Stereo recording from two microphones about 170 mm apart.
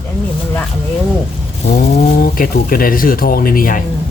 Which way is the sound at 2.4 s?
55° left (ahead or behind).